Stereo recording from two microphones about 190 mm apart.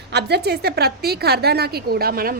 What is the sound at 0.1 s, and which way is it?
A woman's voice, 60° right (ahead or behind).